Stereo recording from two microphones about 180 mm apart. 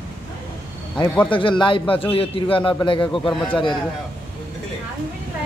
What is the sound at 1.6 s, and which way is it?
A man's voice, 30° left (ahead or behind).